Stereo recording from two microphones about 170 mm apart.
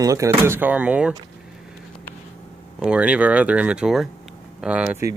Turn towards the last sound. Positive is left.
turn(degrees=-5)  # may be behind; listen again after turning